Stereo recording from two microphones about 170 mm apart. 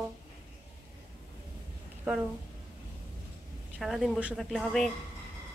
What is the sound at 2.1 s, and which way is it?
Speech, centre (ahead or behind).